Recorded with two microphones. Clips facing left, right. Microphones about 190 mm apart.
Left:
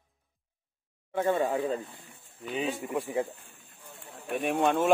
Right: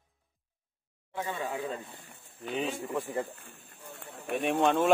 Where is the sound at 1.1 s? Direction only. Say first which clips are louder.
Left 8 dB; 55° left (ahead or behind); by 1.8 s 40° left (ahead or behind).